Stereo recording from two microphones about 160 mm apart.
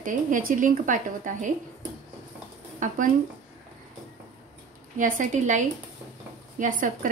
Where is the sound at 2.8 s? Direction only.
55° right (ahead or behind).